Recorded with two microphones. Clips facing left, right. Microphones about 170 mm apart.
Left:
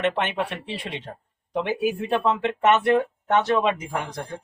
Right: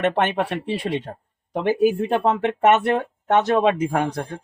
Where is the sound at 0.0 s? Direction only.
45° right (ahead or behind).